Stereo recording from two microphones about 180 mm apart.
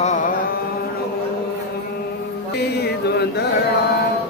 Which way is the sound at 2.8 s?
65° left (ahead or behind).